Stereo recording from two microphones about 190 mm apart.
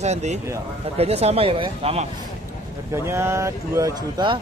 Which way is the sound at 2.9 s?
15° right (ahead or behind).